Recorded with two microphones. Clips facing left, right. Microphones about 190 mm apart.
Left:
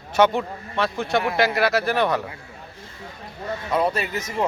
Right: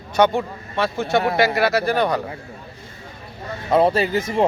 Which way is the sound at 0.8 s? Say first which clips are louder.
Right 3 dB; centre (ahead or behind).